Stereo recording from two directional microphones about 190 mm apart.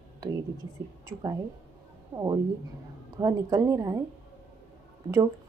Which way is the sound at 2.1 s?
20° right (ahead or behind).